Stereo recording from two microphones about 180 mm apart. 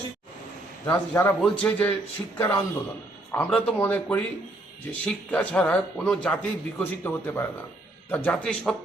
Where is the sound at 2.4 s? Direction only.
15° left (ahead or behind).